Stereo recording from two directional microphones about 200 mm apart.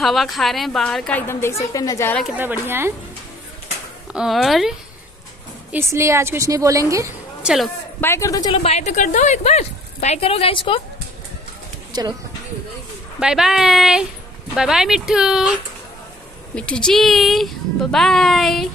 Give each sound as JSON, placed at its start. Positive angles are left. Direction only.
{"t": 0.0, "sound": "a woman's voice", "side_deg": 0}
{"t": 2.2, "sound": "a woman's voice", "side_deg": -10}
{"t": 4.1, "sound": "a woman's voice", "side_deg": 0}
{"t": 5.7, "sound": "a woman's voice", "side_deg": -10}
{"t": 7.4, "sound": "a woman's voice", "side_deg": 0}
{"t": 8.0, "sound": "a man's voice", "side_deg": 15}
{"t": 8.6, "sound": "speech", "side_deg": 35}
{"t": 11.9, "sound": "speech", "side_deg": -20}
{"t": 13.2, "sound": "a woman's voice", "side_deg": -5}
{"t": 16.5, "sound": "a woman's voice", "side_deg": 5}